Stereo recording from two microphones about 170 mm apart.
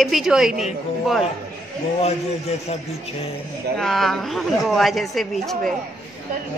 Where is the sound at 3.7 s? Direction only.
Centre (ahead or behind).